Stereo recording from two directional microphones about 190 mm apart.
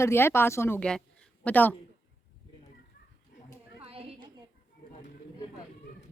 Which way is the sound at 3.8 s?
30° right (ahead or behind).